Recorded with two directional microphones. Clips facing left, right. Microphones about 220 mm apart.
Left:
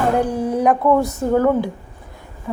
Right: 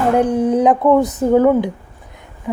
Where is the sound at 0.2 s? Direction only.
20° right (ahead or behind).